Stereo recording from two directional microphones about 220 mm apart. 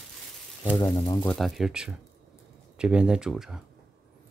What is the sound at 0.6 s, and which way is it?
Speech, 20° left (ahead or behind).